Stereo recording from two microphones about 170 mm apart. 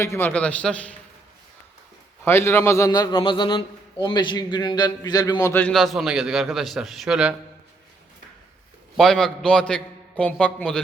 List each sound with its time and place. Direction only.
0.0 s a man's voice: 15° left (ahead or behind)
2.2 s a man's voice: 15° left (ahead or behind); by 7.3 s 5° right (ahead or behind)
9.0 s a man's voice: centre (ahead or behind)